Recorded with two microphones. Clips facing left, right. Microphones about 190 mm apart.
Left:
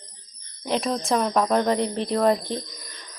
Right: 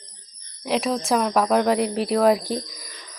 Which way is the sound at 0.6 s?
Centre (ahead or behind).